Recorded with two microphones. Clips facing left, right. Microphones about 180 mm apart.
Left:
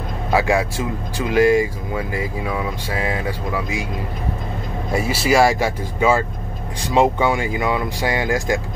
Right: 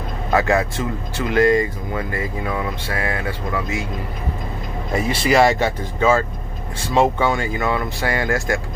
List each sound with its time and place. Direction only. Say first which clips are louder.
0.3 s speech: even; 10° left (ahead or behind)
4.9 s speech: even; 5° left (ahead or behind)